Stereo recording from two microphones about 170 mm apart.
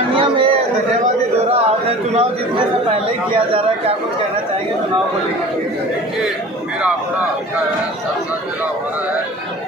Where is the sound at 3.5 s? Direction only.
35° right (ahead or behind).